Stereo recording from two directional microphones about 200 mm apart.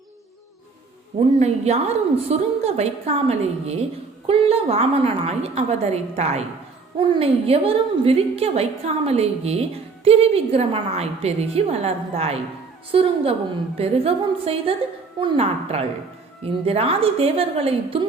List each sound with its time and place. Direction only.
1.4 s a woman's voice: 35° right (ahead or behind)